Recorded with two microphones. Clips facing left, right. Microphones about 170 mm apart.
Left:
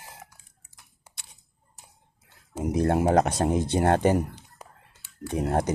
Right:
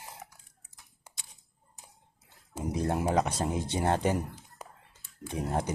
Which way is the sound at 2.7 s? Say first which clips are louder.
Left 7 dB; 65° left (ahead or behind).